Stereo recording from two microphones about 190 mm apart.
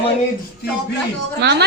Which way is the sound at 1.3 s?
60° right (ahead or behind).